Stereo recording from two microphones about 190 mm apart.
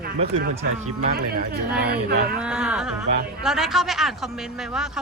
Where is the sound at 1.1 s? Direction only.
55° right (ahead or behind).